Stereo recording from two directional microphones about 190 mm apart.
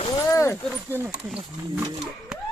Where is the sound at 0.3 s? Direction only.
15° left (ahead or behind).